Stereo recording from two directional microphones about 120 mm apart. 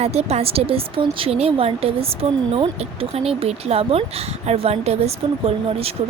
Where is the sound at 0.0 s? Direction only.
60° right (ahead or behind).